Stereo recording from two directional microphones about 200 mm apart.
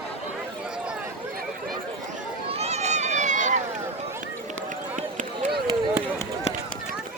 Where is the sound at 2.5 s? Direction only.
30° right (ahead or behind).